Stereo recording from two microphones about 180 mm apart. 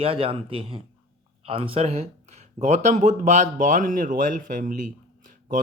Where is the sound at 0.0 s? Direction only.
30° right (ahead or behind).